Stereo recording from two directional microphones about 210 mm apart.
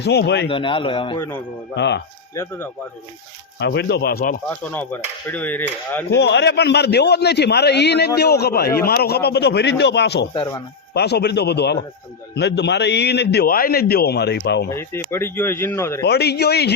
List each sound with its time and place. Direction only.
0.0 s a man's voice: 50° left (ahead or behind)
0.4 s a man's voice: 25° left (ahead or behind)
1.7 s speech: 55° left (ahead or behind)
2.3 s speech: 15° left (ahead or behind)
3.6 s a man's voice: 55° left (ahead or behind)
4.7 s speech: 10° left (ahead or behind)
6.1 s a man's voice: 55° left (ahead or behind)
10.3 s a man's voice: 25° left (ahead or behind)
10.9 s a man's voice: 50° left (ahead or behind)
14.7 s speech: 10° left (ahead or behind)
16.0 s a man's voice: 50° left (ahead or behind)